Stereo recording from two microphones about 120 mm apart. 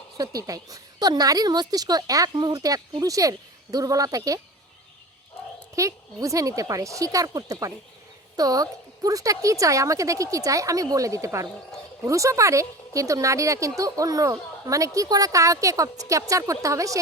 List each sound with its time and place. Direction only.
0.2 s a woman's voice: 30° right (ahead or behind)
5.7 s a woman's voice: 25° right (ahead or behind)